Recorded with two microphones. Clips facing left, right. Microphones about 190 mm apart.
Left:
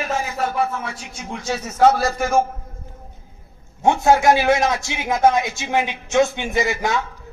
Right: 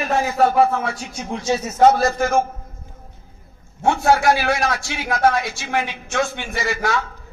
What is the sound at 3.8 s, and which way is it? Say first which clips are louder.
A man's voice: left 1 dB; 20° left (ahead or behind).